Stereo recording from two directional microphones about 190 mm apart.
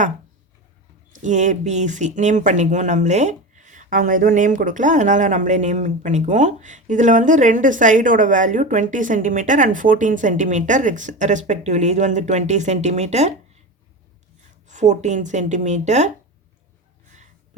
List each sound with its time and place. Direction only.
1.1 s speech: 40° right (ahead or behind)
14.7 s speech: 40° right (ahead or behind)